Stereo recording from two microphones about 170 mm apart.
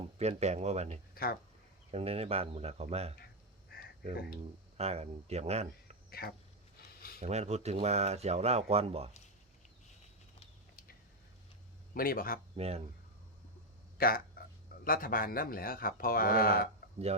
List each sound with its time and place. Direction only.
0.2 s speech: 40° right (ahead or behind)
1.1 s a sound: 60° left (ahead or behind)
1.9 s speech: 35° right (ahead or behind)
3.7 s a sound: 65° left (ahead or behind)
4.8 s speech: 40° right (ahead or behind)
6.1 s speech: 65° left (ahead or behind)
7.2 s speech: 40° right (ahead or behind)
11.9 s speech: 60° left (ahead or behind)
12.5 s speech: 35° right (ahead or behind)
14.4 s a sound: 60° left (ahead or behind)
14.8 s speech: 55° left (ahead or behind)